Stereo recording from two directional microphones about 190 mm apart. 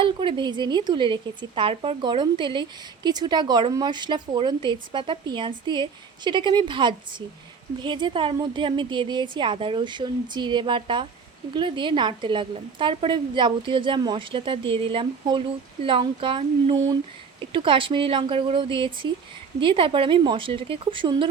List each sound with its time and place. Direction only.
0.0 s speech: 25° right (ahead or behind)